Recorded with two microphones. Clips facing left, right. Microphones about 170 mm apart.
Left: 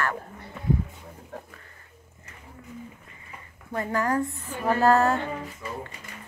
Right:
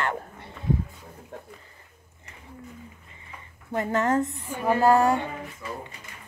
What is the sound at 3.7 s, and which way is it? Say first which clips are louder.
A woman's voice: right 2 dB; 25° right (ahead or behind).